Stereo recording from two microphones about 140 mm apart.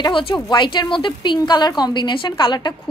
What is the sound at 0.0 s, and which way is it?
A woman's voice, 35° left (ahead or behind).